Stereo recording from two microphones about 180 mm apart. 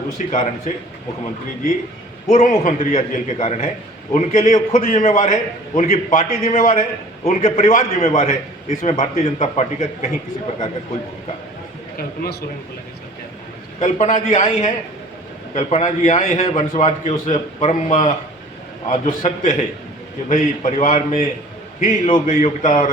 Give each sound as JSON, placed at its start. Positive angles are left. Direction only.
{"t": 0.3, "sound": "a man's voice", "side_deg": 40}
{"t": 2.2, "sound": "a man's voice", "side_deg": 40}
{"t": 11.9, "sound": "a man's voice", "side_deg": 55}
{"t": 13.7, "sound": "a man's voice", "side_deg": 40}